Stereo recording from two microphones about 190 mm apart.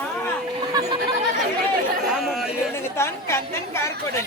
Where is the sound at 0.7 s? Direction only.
20° right (ahead or behind).